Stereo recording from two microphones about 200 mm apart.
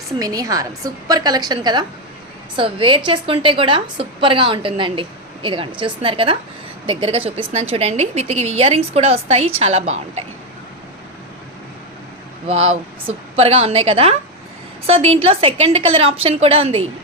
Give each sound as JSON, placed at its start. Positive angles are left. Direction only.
{"t": 0.2, "sound": "a woman's voice", "side_deg": -15}
{"t": 12.5, "sound": "a woman's voice", "side_deg": -30}